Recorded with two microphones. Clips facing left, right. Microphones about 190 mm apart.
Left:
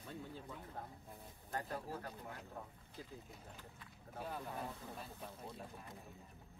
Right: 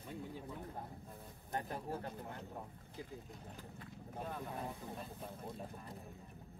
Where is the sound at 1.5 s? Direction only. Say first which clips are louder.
Right 2 dB; 20° right (ahead or behind).